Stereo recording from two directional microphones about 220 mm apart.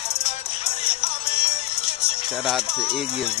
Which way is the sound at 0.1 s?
25° left (ahead or behind).